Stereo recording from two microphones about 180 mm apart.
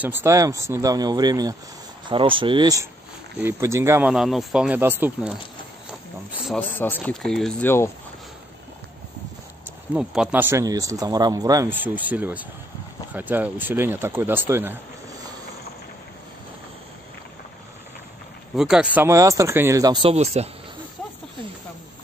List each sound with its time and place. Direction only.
0.0 s speech: 10° right (ahead or behind)
4.1 s speech: centre (ahead or behind)
5.9 s a sound: centre (ahead or behind)
6.7 s speech: 10° left (ahead or behind)
9.7 s speech: 5° right (ahead or behind)
18.6 s speech: 5° right (ahead or behind); by 20.4 s 35° right (ahead or behind)